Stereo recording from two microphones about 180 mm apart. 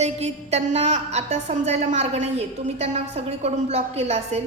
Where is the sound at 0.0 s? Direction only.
35° right (ahead or behind).